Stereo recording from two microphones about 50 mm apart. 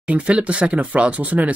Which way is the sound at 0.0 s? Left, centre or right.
Right.